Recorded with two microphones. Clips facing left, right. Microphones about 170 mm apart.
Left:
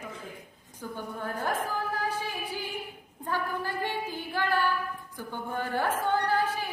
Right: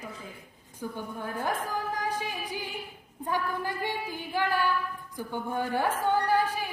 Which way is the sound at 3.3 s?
15° right (ahead or behind).